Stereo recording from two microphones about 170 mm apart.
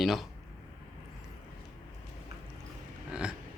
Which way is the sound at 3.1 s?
5° right (ahead or behind).